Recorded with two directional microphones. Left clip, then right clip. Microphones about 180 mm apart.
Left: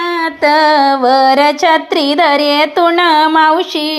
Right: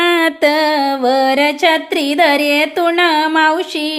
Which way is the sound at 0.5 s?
5° right (ahead or behind).